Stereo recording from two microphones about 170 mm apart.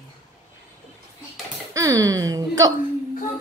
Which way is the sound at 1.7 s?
20° right (ahead or behind).